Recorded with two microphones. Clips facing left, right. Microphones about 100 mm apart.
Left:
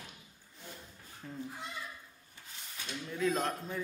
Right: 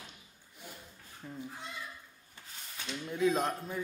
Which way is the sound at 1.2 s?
10° right (ahead or behind).